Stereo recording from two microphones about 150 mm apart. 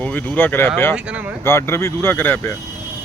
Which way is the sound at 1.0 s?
10° right (ahead or behind).